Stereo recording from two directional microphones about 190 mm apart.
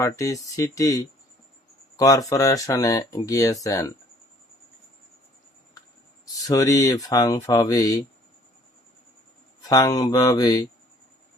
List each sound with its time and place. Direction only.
0.0 s speech: 15° left (ahead or behind)
6.5 s speech: 15° left (ahead or behind)
9.6 s speech: 20° left (ahead or behind)